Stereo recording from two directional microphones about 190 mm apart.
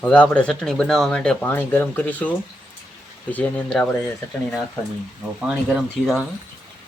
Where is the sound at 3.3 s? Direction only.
5° left (ahead or behind).